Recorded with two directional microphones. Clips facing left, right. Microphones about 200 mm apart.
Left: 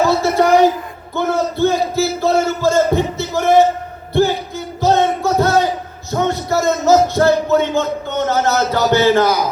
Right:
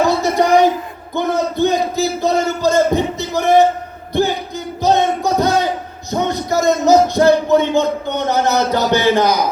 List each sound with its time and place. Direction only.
0.1 s a sound: 15° right (ahead or behind)
6.1 s music: 15° right (ahead or behind)
8.3 s speech: 15° right (ahead or behind)